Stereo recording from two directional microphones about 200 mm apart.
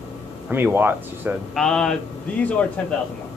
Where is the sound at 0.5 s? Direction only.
10° right (ahead or behind).